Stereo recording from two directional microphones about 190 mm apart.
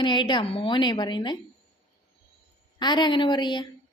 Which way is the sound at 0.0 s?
25° left (ahead or behind).